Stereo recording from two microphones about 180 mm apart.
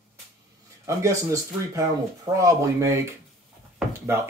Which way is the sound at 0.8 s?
15° right (ahead or behind).